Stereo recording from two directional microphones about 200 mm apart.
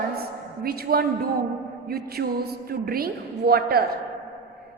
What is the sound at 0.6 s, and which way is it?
A woman's voice, 50° right (ahead or behind).